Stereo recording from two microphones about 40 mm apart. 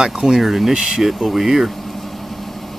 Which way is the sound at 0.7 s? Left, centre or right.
Centre.